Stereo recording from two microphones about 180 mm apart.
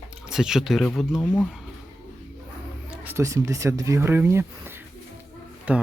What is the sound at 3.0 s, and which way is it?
Speech, 15° right (ahead or behind).